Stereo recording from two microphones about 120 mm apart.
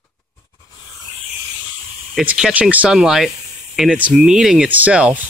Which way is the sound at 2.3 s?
10° right (ahead or behind).